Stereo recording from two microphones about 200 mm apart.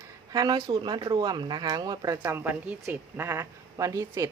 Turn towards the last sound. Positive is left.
turn(degrees=-15)  # may be behind; listen again after turning